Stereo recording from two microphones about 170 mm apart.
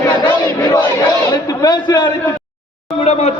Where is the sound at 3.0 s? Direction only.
40° left (ahead or behind).